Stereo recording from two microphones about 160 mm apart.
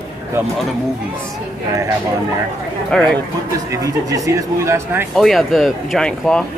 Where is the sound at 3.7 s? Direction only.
20° right (ahead or behind).